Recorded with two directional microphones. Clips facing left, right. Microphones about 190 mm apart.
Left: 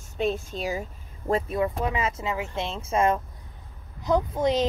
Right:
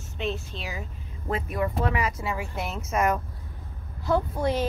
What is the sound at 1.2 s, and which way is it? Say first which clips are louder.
Speech: left 3 dB; 30° left (ahead or behind).